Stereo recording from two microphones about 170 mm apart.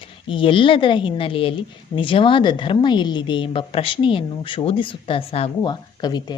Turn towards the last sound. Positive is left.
turn(degrees=25)  # may be behind; listen again after turning